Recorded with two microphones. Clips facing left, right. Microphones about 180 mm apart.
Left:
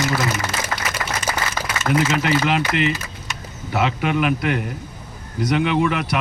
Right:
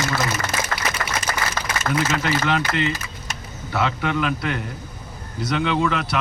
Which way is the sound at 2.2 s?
15° left (ahead or behind).